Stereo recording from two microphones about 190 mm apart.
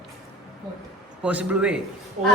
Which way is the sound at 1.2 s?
5° right (ahead or behind).